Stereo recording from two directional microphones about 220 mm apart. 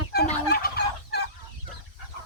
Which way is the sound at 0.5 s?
45° left (ahead or behind).